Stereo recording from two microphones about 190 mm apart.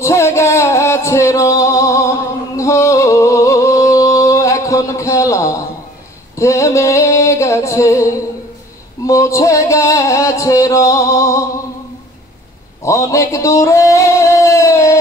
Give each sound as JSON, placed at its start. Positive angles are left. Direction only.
{"t": 0.0, "sound": "music", "side_deg": 15}
{"t": 6.3, "sound": "a sound", "side_deg": 15}
{"t": 9.0, "sound": "music", "side_deg": 15}
{"t": 12.8, "sound": "singing", "side_deg": 15}